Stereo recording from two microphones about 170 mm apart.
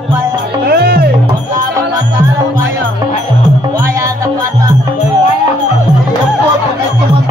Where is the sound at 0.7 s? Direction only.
65° right (ahead or behind).